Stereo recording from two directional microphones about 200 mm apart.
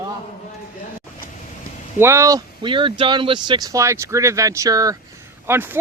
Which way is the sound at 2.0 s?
15° right (ahead or behind).